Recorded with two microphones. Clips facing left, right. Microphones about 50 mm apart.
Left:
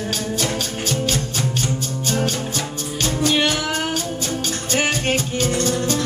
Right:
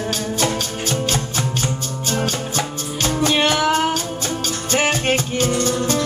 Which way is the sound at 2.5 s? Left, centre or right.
Right.